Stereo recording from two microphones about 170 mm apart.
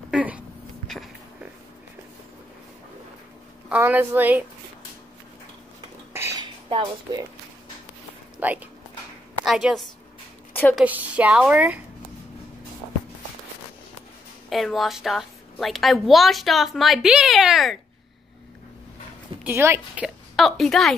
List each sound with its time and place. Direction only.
0.1 s a sound: 10° right (ahead or behind)
3.6 s speech: 10° right (ahead or behind)
6.1 s a sound: 15° right (ahead or behind)
6.4 s speech: 25° right (ahead or behind)
8.4 s a woman's voice: 10° right (ahead or behind)
10.5 s a sound: 10° left (ahead or behind)
10.8 s speech: 10° right (ahead or behind)
14.5 s a woman's voice: centre (ahead or behind)
19.4 s speech: 15° right (ahead or behind)
20.3 s a woman's voice: centre (ahead or behind)